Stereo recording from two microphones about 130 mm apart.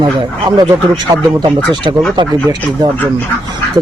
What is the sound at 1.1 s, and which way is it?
Speech, 25° right (ahead or behind).